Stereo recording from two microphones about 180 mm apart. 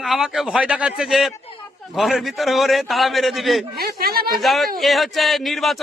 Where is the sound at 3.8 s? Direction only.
60° right (ahead or behind).